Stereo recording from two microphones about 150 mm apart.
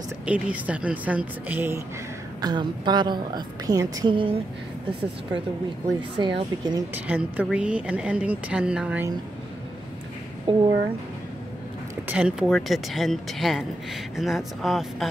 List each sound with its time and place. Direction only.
0.3 s a woman's voice: 10° right (ahead or behind)
2.4 s a woman's voice: 30° right (ahead or behind)
5.9 s speech: 35° right (ahead or behind)
7.1 s a woman's voice: 10° right (ahead or behind)
10.5 s speech: 35° right (ahead or behind)
12.1 s speech: 5° right (ahead or behind)